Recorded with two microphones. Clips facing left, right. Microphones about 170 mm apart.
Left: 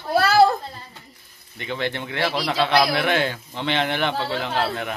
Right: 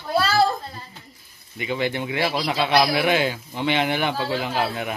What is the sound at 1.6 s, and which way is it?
A man's voice, 10° right (ahead or behind).